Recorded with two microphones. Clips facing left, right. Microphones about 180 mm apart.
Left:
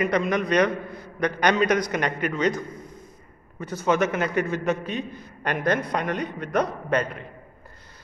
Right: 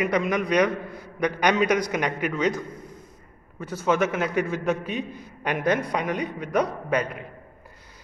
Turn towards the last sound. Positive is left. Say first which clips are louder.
# left 1 dB
turn(degrees=-10)  # may be behind; listen again after turning